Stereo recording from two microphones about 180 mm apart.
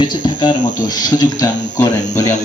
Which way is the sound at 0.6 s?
45° left (ahead or behind).